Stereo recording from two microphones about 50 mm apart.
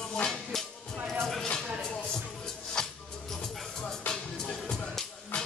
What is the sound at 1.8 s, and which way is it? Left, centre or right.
Music, centre.